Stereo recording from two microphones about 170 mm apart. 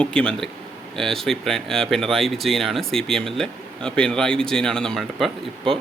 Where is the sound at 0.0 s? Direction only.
5° left (ahead or behind).